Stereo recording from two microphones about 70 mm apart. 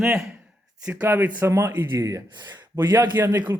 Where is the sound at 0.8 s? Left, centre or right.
Centre.